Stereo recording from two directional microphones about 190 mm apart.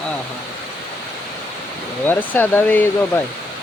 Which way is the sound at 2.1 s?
10° left (ahead or behind).